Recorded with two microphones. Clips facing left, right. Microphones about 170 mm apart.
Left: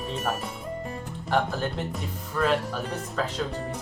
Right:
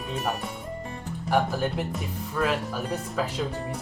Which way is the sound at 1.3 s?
10° right (ahead or behind).